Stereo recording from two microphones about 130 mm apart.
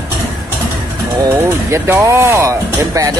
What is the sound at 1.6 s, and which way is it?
Speech, 20° right (ahead or behind).